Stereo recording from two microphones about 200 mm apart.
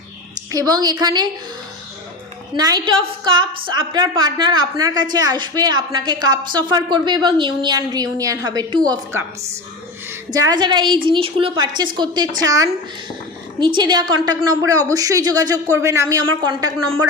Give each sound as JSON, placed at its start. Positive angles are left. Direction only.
{"t": 0.5, "sound": "a woman's voice", "side_deg": -20}
{"t": 2.6, "sound": "a woman's voice", "side_deg": -20}
{"t": 10.3, "sound": "a woman's voice", "side_deg": -20}